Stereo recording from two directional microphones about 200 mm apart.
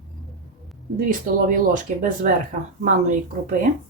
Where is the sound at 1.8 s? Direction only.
40° right (ahead or behind).